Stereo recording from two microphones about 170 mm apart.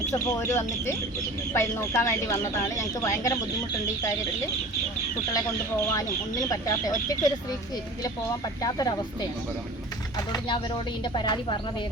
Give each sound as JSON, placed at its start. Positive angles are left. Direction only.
{"t": 0.1, "sound": "speech", "side_deg": 15}
{"t": 5.3, "sound": "speech", "side_deg": 20}
{"t": 8.6, "sound": "speech", "side_deg": 20}
{"t": 10.2, "sound": "speech", "side_deg": 20}